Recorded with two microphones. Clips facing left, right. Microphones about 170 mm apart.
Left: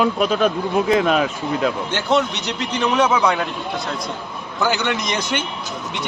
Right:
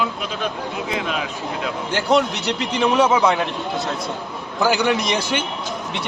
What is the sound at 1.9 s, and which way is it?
A man's voice, 5° right (ahead or behind).